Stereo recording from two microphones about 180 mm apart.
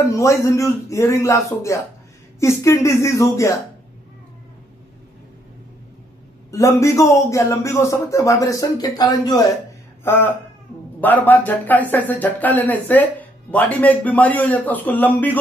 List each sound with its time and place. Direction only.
0.1 s speech: 15° left (ahead or behind)
6.5 s speech: 15° left (ahead or behind)